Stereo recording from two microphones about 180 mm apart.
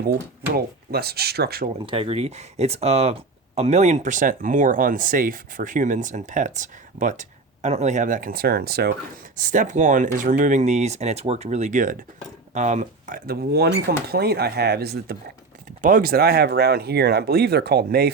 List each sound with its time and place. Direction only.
0.5 s speech: 60° right (ahead or behind)
1.9 s speech: 30° right (ahead or behind); by 8.9 s 60° right (ahead or behind)
9.4 s speech: 45° right (ahead or behind); by 15.2 s 60° right (ahead or behind)
15.8 s speech: 50° right (ahead or behind)